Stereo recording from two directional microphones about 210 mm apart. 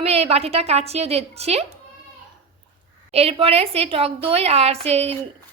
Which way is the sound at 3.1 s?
30° right (ahead or behind).